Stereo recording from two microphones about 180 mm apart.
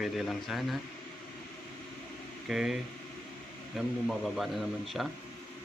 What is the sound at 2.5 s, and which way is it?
Speech, 5° right (ahead or behind).